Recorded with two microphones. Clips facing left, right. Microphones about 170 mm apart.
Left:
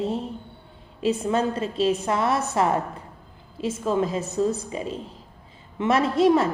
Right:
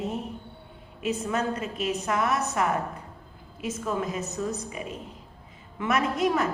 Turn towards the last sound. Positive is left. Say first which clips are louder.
# left 6 dB
turn(degrees=30)  # may be behind; listen again after turning